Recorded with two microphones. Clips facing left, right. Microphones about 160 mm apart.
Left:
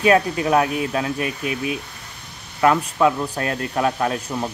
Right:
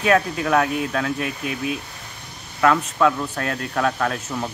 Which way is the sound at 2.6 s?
15° left (ahead or behind).